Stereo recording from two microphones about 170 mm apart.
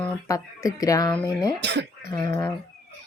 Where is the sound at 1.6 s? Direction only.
90° right.